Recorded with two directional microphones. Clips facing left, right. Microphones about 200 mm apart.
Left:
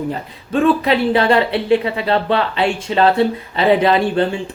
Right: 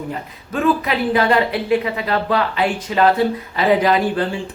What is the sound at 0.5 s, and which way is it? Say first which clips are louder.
Speech: left 4 dB; 30° left (ahead or behind).